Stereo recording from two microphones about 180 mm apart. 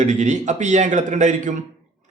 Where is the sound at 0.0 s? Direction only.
40° right (ahead or behind).